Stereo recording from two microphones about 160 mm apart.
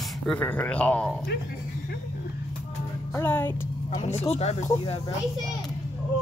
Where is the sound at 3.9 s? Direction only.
45° left (ahead or behind).